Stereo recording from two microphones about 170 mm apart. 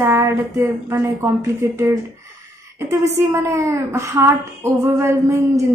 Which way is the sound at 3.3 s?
15° right (ahead or behind).